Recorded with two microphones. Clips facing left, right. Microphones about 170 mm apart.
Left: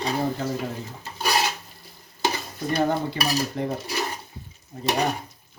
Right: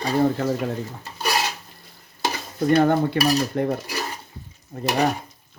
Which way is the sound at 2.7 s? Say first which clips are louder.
Right 6 dB; 60° right (ahead or behind).